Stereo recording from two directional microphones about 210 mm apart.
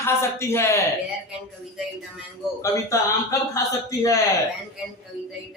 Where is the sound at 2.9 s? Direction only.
15° left (ahead or behind).